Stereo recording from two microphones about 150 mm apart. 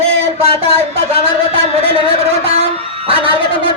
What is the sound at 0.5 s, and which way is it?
Speech, 40° right (ahead or behind).